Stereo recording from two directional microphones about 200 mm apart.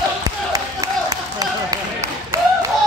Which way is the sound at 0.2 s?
20° right (ahead or behind).